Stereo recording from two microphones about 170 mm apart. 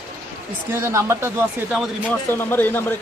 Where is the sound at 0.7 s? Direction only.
15° right (ahead or behind).